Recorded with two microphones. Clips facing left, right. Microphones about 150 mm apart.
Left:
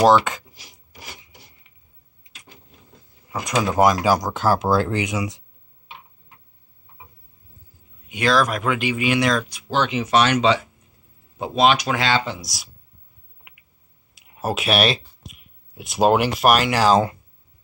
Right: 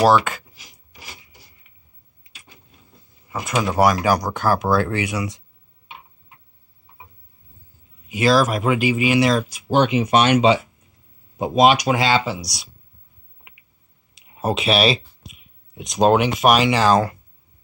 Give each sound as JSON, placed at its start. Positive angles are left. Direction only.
{"t": 0.2, "sound": "speech", "side_deg": 20}
{"t": 3.3, "sound": "door", "side_deg": 10}
{"t": 3.7, "sound": "speech", "side_deg": 20}
{"t": 8.1, "sound": "speech", "side_deg": -5}
{"t": 14.1, "sound": "speech", "side_deg": 0}